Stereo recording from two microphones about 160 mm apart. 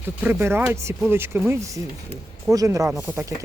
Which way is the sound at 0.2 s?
15° right (ahead or behind).